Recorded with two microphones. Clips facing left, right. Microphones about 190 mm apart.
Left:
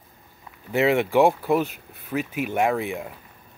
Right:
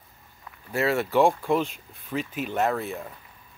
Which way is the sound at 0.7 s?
20° left (ahead or behind).